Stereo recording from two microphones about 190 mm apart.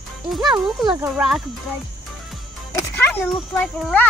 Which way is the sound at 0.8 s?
10° right (ahead or behind).